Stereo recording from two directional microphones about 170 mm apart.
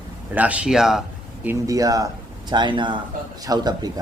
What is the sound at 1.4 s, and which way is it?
Speech, 20° right (ahead or behind).